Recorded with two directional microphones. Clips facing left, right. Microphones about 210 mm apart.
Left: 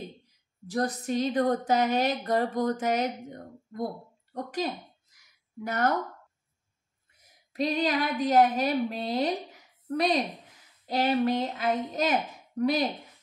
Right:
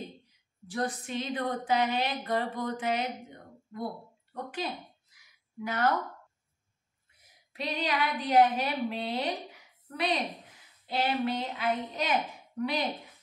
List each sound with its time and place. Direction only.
0.7 s speech: 40° left (ahead or behind)
5.1 s a sound: 45° left (ahead or behind)
7.5 s a woman's voice: 40° left (ahead or behind)
10.9 s a woman's voice: 45° left (ahead or behind)